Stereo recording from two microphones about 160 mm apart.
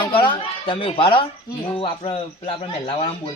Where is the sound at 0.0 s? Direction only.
30° left (ahead or behind).